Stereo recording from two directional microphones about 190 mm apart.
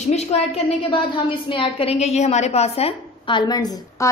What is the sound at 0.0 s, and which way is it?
A woman's voice, 35° left (ahead or behind).